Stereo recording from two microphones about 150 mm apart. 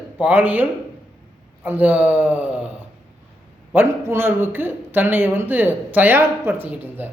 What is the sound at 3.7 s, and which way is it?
Speech, 15° right (ahead or behind).